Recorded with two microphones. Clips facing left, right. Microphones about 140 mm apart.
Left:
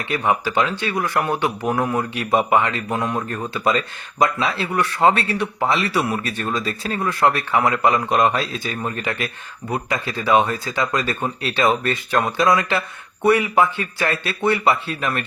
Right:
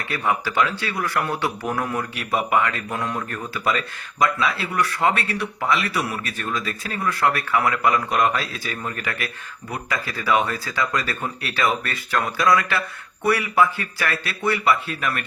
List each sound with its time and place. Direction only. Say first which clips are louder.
0.0 s speech: left 3 dB; 20° left (ahead or behind)